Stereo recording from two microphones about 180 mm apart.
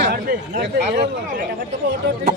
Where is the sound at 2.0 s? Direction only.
75° right (ahead or behind).